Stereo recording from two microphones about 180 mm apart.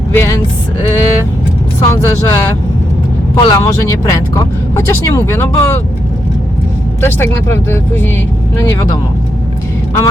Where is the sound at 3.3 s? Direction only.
25° left (ahead or behind).